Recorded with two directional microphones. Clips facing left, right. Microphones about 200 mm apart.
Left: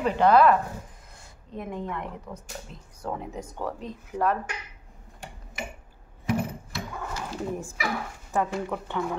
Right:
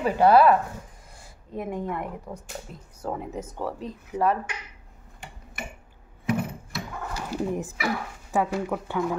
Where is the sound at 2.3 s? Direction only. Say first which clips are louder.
Right 2 dB; 20° right (ahead or behind).